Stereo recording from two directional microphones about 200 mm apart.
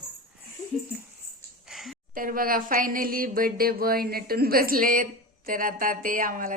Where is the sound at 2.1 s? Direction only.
45° right (ahead or behind).